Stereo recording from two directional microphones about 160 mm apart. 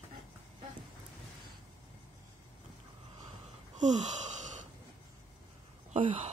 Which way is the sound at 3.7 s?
50° right (ahead or behind).